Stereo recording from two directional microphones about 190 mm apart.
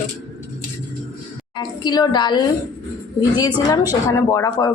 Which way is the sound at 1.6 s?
20° left (ahead or behind).